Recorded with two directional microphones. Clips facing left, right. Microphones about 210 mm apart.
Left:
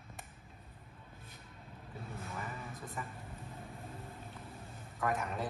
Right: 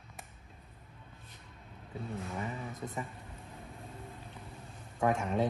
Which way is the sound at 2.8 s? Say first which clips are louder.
Right 6 dB; 25° right (ahead or behind).